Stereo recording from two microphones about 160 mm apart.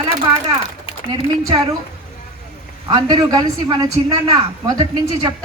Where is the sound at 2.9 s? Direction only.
25° right (ahead or behind).